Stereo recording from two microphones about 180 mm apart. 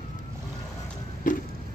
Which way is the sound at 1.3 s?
45° left (ahead or behind).